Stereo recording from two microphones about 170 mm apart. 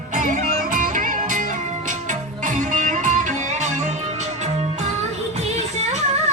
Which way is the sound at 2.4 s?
50° right (ahead or behind).